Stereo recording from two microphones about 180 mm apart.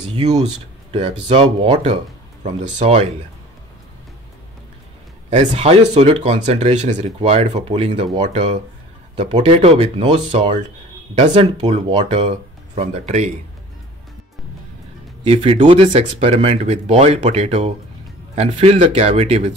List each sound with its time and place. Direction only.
1.3 s speech: 30° right (ahead or behind)
5.3 s speech: 40° right (ahead or behind)
15.2 s speech: 30° right (ahead or behind)